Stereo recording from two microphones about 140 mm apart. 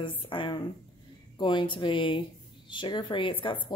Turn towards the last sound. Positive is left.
turn(degrees=35)  # may be behind; listen again after turning